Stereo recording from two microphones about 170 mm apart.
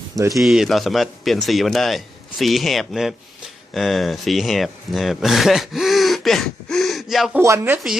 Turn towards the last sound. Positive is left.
turn(degrees=-15)  # may be behind; listen again after turning